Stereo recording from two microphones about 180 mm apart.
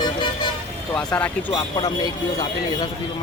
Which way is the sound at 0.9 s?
10° left (ahead or behind).